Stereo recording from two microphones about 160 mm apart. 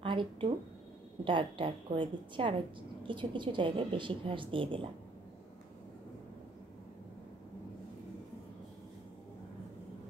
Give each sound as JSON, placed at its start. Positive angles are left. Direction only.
{"t": 0.0, "sound": "speech", "side_deg": -30}